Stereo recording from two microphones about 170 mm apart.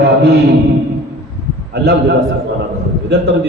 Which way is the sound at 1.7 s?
75° right (ahead or behind).